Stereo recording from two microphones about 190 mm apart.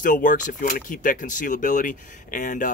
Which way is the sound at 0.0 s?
45° left (ahead or behind).